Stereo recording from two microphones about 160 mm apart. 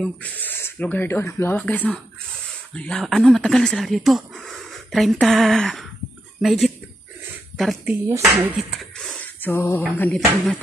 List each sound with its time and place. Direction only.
0.0 s speech: 10° left (ahead or behind)
8.1 s speech: 20° right (ahead or behind)
8.5 s speech: centre (ahead or behind)